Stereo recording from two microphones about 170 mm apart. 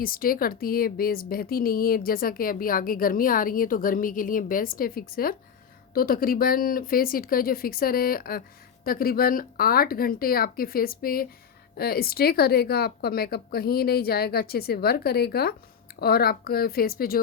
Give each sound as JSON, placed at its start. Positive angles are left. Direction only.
{"t": 0.0, "sound": "a woman's voice", "side_deg": 55}